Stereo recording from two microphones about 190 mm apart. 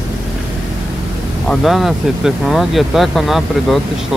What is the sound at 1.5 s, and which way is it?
Speech, centre (ahead or behind).